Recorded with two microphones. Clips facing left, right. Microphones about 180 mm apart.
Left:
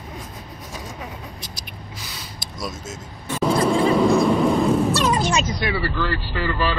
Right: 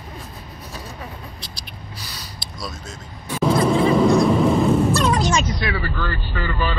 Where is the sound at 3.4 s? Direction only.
5° right (ahead or behind).